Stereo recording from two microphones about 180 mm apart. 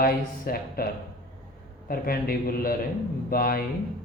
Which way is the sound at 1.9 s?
55° left (ahead or behind).